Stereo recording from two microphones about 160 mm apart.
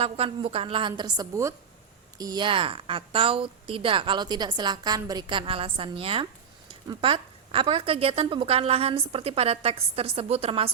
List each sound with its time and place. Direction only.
0.0 s a woman's voice: 35° right (ahead or behind)